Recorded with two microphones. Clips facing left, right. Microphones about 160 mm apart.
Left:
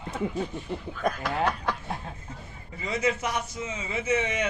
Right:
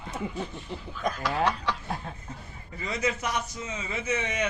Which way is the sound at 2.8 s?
25° left (ahead or behind).